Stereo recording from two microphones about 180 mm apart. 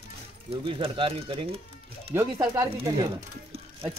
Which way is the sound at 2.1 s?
15° right (ahead or behind).